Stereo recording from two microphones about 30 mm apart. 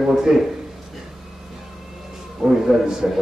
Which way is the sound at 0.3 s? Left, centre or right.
Centre.